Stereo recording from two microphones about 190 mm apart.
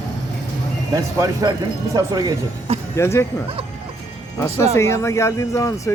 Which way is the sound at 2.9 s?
15° left (ahead or behind).